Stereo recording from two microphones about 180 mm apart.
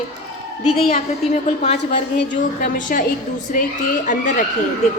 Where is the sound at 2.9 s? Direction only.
50° left (ahead or behind).